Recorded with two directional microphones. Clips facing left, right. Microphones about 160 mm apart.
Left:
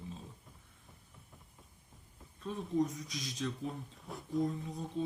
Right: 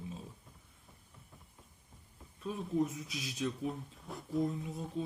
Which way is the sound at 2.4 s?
5° right (ahead or behind).